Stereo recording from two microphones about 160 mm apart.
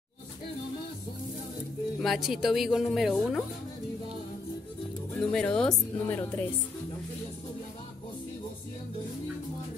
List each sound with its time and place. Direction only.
2.0 s speech: centre (ahead or behind)
5.2 s speech: 5° left (ahead or behind)